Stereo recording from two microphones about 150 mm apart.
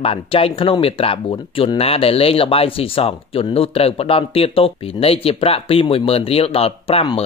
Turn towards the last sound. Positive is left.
turn(degrees=40)  # may be behind; listen again after turning